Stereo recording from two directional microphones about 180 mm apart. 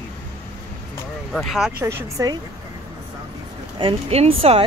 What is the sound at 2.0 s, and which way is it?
Speech, 20° right (ahead or behind).